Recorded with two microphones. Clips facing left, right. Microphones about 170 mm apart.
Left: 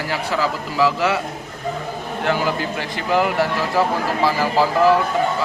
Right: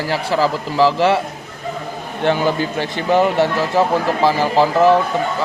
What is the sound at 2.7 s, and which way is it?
Speech, 30° right (ahead or behind).